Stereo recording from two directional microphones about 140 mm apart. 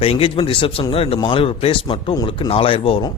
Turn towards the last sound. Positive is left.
turn(degrees=40)  # may be behind; listen again after turning